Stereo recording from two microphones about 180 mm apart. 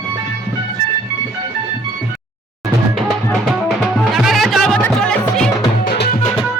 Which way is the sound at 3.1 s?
Centre (ahead or behind).